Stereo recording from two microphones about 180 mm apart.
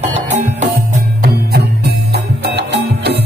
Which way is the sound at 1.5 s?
65° right (ahead or behind).